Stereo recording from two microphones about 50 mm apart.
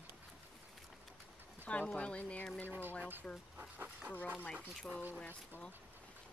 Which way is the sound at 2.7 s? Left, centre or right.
Right.